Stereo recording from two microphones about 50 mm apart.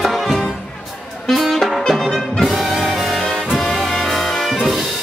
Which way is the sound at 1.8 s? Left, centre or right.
Centre.